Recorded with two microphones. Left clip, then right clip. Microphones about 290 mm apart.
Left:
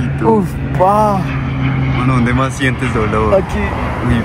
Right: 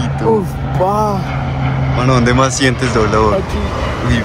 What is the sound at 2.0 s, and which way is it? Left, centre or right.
Speech, centre.